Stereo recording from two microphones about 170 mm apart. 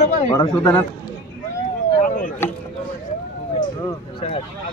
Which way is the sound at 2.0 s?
50° left (ahead or behind).